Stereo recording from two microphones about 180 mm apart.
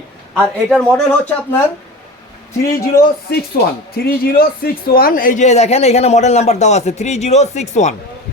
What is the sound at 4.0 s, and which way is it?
Speech, 55° left (ahead or behind).